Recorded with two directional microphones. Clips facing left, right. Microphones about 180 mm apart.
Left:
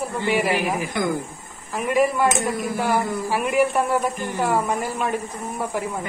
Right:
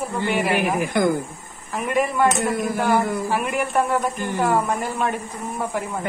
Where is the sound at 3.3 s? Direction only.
5° left (ahead or behind).